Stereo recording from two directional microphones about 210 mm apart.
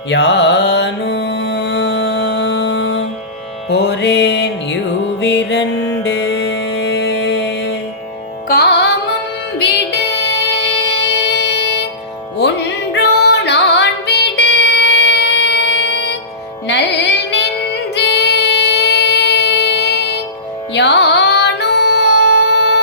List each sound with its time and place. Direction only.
0.1 s music: 55° left (ahead or behind)
5.2 s mantra: 55° left (ahead or behind)
8.4 s music: 50° left (ahead or behind)
17.9 s child singing: 55° left (ahead or behind)
20.7 s music: 55° left (ahead or behind)